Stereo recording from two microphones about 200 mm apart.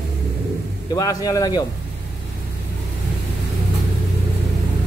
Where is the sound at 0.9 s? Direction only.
15° left (ahead or behind).